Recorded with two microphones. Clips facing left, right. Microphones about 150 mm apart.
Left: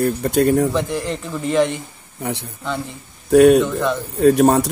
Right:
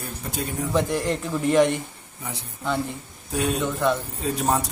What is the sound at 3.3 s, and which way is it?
Speech, 70° left (ahead or behind).